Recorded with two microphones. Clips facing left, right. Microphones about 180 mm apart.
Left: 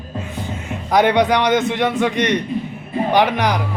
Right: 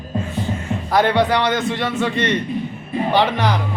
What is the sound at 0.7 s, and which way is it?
A man's voice, 15° left (ahead or behind).